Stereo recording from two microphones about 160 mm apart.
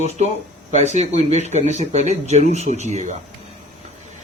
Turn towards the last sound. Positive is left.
turn(degrees=-45)  # may be behind; listen again after turning